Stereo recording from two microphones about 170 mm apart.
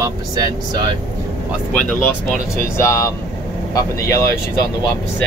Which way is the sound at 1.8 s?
5° left (ahead or behind).